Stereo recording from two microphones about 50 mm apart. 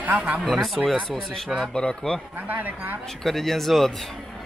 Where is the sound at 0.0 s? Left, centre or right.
Right.